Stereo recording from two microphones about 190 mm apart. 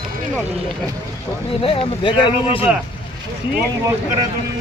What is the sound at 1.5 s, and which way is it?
Speech, 30° left (ahead or behind).